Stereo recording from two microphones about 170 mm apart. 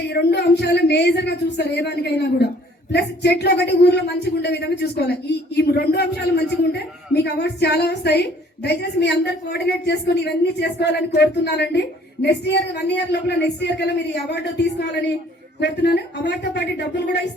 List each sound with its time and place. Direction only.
0.1 s a woman's voice: 75° left (ahead or behind)